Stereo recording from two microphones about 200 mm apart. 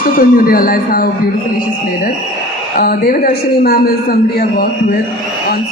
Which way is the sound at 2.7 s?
45° left (ahead or behind).